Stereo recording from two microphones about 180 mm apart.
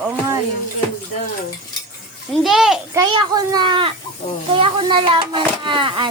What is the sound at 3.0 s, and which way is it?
A child's voice, 25° right (ahead or behind).